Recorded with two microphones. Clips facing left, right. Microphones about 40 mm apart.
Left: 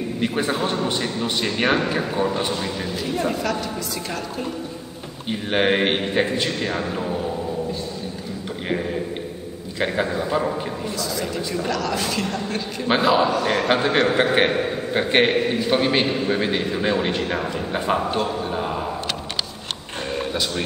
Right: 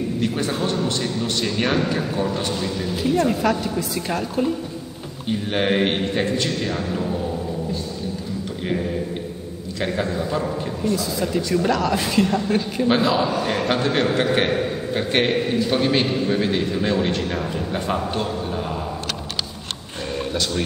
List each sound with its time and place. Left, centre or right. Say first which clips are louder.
0.2 s a man's voice: left 3 dB; centre
2.9 s a woman's voice: right 6 dB; centre
5.3 s a man's voice: left 1 dB; centre
8.6 s a sound: even; centre
9.8 s a man's voice: left 1 dB; centre
11.0 s a woman's voice: right 2 dB; centre
12.8 s a man's voice: left 2 dB; centre
13.3 s a woman's voice: left 1 dB; centre
13.7 s a man's voice: left 2 dB; centre
20.2 s a sound: right 1 dB; centre